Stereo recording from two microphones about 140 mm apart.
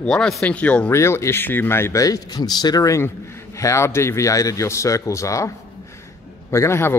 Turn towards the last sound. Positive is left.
turn(degrees=20)  # may be behind; listen again after turning